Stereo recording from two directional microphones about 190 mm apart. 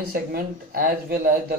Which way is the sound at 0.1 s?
50° right (ahead or behind).